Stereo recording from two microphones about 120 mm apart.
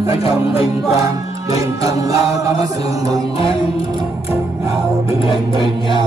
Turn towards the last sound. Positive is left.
turn(degrees=45)  # may be behind; listen again after turning